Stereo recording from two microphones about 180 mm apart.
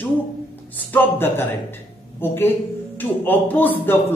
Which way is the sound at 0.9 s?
10° left (ahead or behind).